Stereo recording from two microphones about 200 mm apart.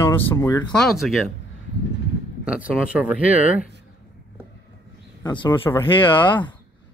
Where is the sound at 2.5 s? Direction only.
5° right (ahead or behind).